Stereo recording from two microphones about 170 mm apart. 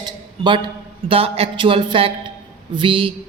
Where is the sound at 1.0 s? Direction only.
35° right (ahead or behind).